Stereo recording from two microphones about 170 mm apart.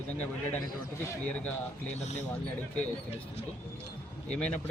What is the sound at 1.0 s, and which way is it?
Speech, 10° left (ahead or behind).